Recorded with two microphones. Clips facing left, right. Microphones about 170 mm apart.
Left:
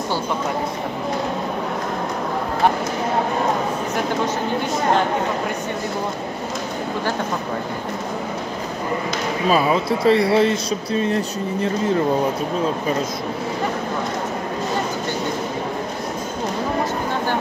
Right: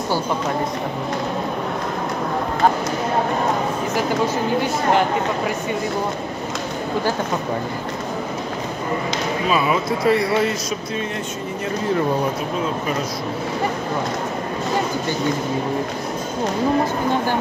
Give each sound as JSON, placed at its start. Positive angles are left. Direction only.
{"t": 9.5, "sound": "speech", "side_deg": 30}